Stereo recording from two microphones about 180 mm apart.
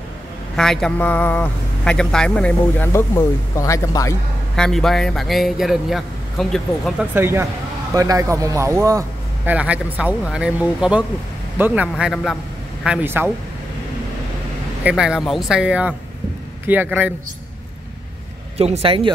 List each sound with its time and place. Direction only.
0.6 s speech: 5° left (ahead or behind)
4.6 s a man's voice: 5° left (ahead or behind)
7.2 s speech: 15° right (ahead or behind)
9.5 s a man's voice: 5° right (ahead or behind)
14.8 s a man's voice: 5° right (ahead or behind)
18.6 s speech: 35° right (ahead or behind)